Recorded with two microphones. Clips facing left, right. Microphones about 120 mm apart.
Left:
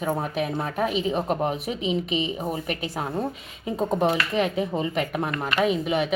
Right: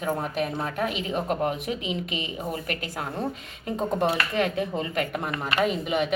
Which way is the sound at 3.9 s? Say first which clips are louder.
Left 2 dB; centre (ahead or behind).